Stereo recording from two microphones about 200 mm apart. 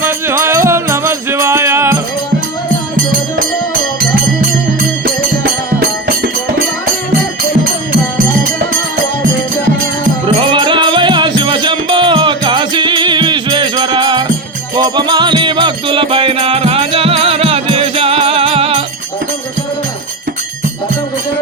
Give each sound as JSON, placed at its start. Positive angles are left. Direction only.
{"t": 0.0, "sound": "music", "side_deg": -10}
{"t": 4.1, "sound": "music", "side_deg": -45}
{"t": 10.2, "sound": "music", "side_deg": -25}